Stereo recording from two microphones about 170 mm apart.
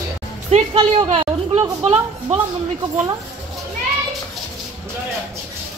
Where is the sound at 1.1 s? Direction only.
30° right (ahead or behind).